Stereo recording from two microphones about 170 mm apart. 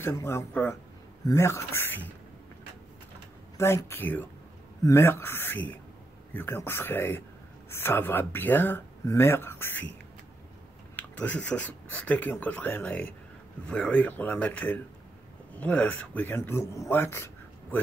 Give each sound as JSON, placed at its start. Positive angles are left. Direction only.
{"t": 0.0, "sound": "speech", "side_deg": 15}
{"t": 3.5, "sound": "speech", "side_deg": 15}
{"t": 11.0, "sound": "speech", "side_deg": 10}